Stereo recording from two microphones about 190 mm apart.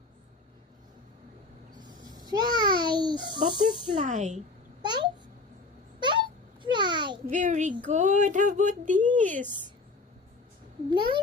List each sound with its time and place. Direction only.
2.1 s a sound: 20° right (ahead or behind)
3.9 s speech: 40° right (ahead or behind)
4.8 s babbling: 25° right (ahead or behind)
6.0 s a sound: 25° right (ahead or behind)
7.3 s speech: 40° right (ahead or behind)
10.8 s a child's voice: 25° right (ahead or behind)